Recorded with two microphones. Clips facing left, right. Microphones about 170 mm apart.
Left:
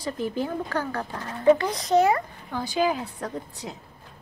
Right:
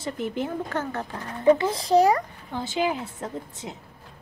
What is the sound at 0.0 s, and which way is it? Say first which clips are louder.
Speech: left 1 dB; 20° right (ahead or behind).